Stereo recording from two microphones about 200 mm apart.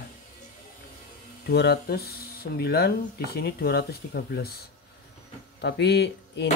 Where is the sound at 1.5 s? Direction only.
55° left (ahead or behind).